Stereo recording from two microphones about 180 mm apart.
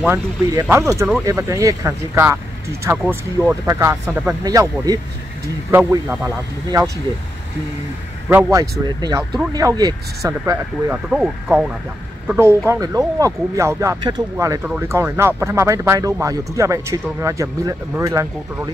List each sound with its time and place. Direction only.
0.0 s speech: 15° right (ahead or behind)
4.5 s speech: 20° right (ahead or behind)
8.5 s speech: 20° right (ahead or behind)
11.1 s speech: 5° right (ahead or behind)